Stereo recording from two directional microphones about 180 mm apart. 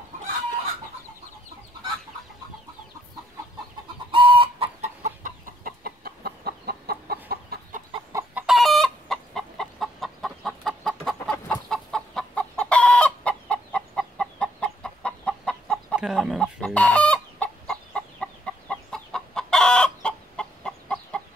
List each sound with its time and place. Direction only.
4.1 s chicken: 30° right (ahead or behind)
5.0 s chicken: 50° right (ahead or behind)
8.1 s chicken: 15° right (ahead or behind)
8.5 s chicken: centre (ahead or behind)